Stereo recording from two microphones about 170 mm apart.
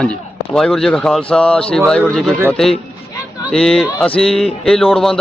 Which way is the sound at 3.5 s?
5° left (ahead or behind).